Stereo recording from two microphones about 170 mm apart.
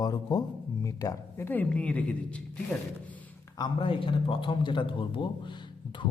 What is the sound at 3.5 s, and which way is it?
A man's voice, 30° left (ahead or behind).